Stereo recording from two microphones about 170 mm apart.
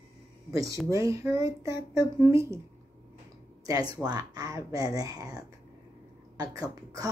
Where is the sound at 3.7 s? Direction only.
20° right (ahead or behind).